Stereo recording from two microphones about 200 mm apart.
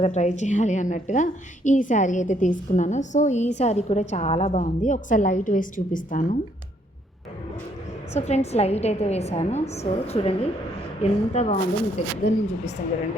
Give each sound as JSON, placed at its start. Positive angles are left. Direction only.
{"t": 0.0, "sound": "a woman's voice", "side_deg": 35}
{"t": 8.1, "sound": "a woman's voice", "side_deg": 35}